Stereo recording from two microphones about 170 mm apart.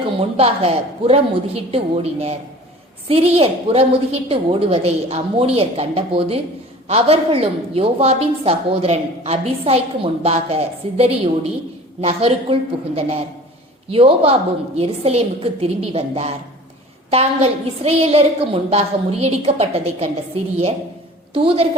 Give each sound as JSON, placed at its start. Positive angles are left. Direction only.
{"t": 0.2, "sound": "a woman's voice", "side_deg": -35}